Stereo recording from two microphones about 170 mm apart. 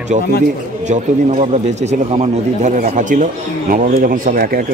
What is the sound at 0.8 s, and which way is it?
A man's voice, 45° right (ahead or behind).